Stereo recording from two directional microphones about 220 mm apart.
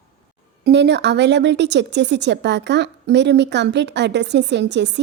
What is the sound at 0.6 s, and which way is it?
Speech, 50° right (ahead or behind).